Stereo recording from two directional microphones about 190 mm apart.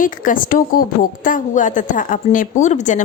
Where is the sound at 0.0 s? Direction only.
45° left (ahead or behind).